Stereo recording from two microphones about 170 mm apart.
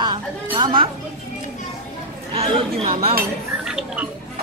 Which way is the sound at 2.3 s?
30° right (ahead or behind).